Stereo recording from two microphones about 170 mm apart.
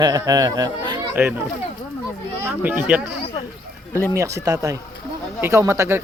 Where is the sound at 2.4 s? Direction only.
10° right (ahead or behind).